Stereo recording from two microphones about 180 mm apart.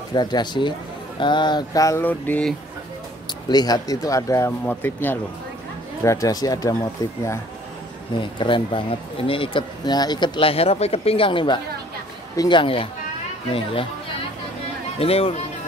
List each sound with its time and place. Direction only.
0.1 s speech: 25° left (ahead or behind)
3.4 s speech: 20° left (ahead or behind)
8.2 s speech: 25° left (ahead or behind)
15.0 s speech: 35° left (ahead or behind)